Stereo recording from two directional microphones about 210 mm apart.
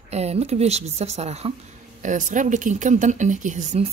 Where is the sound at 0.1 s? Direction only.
30° right (ahead or behind).